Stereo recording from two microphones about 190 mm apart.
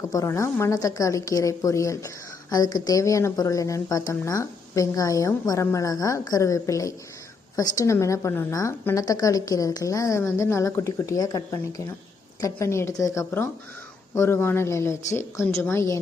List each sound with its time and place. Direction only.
0.1 s a woman's voice: 15° left (ahead or behind)